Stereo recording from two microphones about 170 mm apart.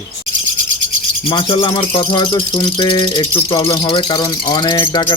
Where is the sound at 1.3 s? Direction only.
30° left (ahead or behind).